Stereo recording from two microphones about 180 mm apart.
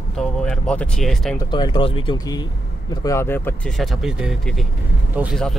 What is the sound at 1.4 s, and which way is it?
Speech, 25° left (ahead or behind).